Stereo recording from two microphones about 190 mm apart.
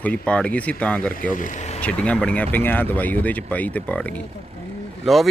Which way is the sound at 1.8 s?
5° left (ahead or behind).